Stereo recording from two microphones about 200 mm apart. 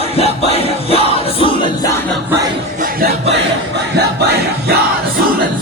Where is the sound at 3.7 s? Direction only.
55° right (ahead or behind).